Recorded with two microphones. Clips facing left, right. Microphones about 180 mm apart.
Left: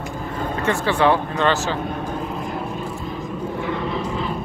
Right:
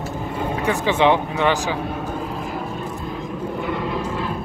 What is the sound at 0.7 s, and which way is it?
Speech, 15° right (ahead or behind).